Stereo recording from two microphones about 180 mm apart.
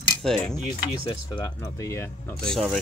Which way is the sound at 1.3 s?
20° left (ahead or behind).